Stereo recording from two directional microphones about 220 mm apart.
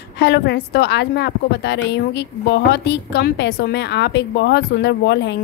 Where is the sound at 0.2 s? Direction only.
50° left (ahead or behind).